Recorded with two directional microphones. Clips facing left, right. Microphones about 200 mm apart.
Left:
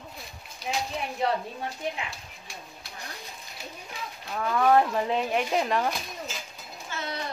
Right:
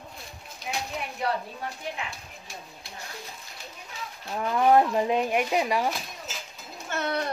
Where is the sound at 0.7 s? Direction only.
30° left (ahead or behind).